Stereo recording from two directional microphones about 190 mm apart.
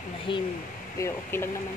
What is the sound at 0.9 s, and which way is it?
Speech, 15° left (ahead or behind).